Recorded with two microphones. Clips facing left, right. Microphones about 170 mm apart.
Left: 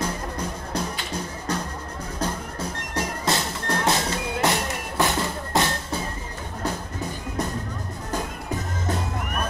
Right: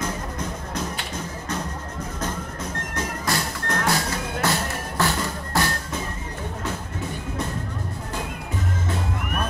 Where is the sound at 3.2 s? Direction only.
25° left (ahead or behind).